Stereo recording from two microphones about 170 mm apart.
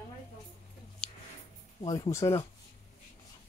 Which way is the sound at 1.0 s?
5° left (ahead or behind).